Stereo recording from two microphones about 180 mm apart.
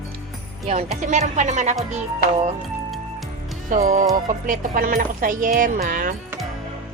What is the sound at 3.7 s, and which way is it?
Speech, 40° right (ahead or behind).